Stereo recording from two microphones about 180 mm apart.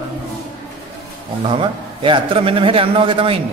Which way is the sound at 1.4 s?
30° right (ahead or behind).